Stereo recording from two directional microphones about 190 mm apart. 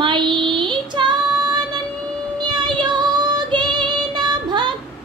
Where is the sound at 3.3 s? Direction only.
25° right (ahead or behind).